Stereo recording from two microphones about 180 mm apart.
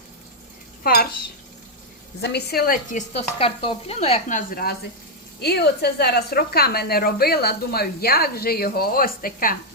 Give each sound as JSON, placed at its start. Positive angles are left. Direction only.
{"t": 2.2, "sound": "speech", "side_deg": 65}
{"t": 3.1, "sound": "sizzle", "side_deg": 35}
{"t": 5.4, "sound": "speech", "side_deg": 65}